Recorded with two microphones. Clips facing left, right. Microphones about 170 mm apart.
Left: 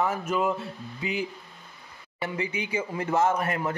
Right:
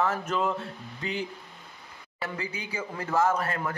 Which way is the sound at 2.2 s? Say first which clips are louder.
Left 4 dB; 20° left (ahead or behind).